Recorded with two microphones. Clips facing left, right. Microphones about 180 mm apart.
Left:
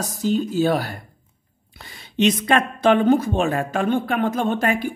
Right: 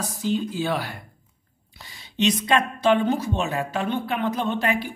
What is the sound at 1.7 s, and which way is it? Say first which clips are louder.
A woman's voice: left 6 dB; 55° left (ahead or behind).